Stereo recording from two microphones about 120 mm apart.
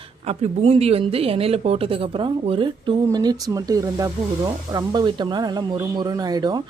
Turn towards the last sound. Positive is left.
turn(degrees=-35)  # may be behind; listen again after turning